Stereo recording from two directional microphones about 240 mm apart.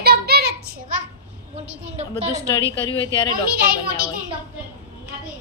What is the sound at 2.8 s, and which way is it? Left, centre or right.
Speech, left.